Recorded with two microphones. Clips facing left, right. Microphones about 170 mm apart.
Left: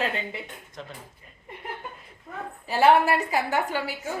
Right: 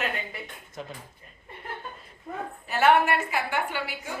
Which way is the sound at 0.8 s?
10° right (ahead or behind).